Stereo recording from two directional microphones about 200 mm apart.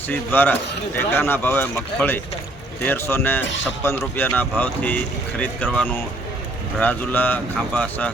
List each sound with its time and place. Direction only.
0.1 s speech: 10° left (ahead or behind)